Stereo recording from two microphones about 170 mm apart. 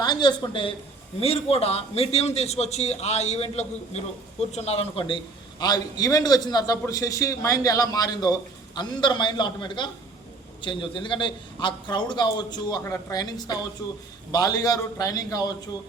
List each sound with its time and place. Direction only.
0.0 s a woman's voice: 25° left (ahead or behind)